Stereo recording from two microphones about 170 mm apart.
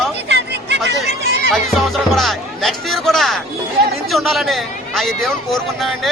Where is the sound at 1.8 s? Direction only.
Centre (ahead or behind).